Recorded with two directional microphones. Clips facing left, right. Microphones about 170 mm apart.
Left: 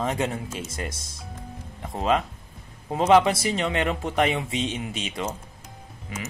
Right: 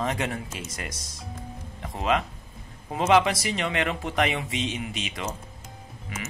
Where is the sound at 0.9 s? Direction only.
55° left (ahead or behind).